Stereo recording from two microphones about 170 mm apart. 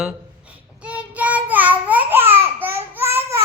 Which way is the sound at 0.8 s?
5° right (ahead or behind).